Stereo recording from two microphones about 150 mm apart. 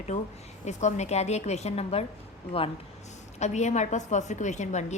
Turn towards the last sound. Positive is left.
turn(degrees=50)  # may be behind; listen again after turning